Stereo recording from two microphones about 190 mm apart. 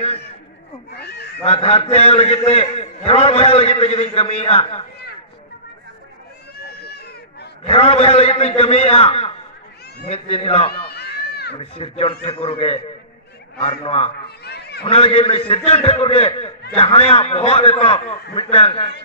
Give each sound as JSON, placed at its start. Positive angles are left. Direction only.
{"t": 0.9, "sound": "speech", "side_deg": 60}
{"t": 1.4, "sound": "a man's voice", "side_deg": 30}
{"t": 6.6, "sound": "goat", "side_deg": 55}
{"t": 7.6, "sound": "a man's voice", "side_deg": 30}
{"t": 10.9, "sound": "run", "side_deg": 55}
{"t": 11.5, "sound": "a man's voice", "side_deg": 30}
{"t": 14.2, "sound": "speech", "side_deg": 60}
{"t": 14.9, "sound": "a man's voice", "side_deg": 30}